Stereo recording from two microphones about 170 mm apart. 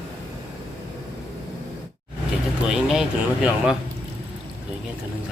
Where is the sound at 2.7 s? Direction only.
5° right (ahead or behind).